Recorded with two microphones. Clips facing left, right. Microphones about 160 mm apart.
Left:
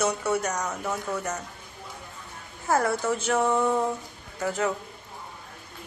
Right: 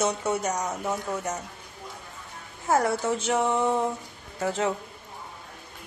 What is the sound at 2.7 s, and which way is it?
Speech, 20° right (ahead or behind).